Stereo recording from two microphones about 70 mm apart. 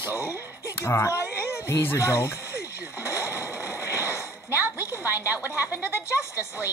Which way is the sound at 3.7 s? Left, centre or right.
Left.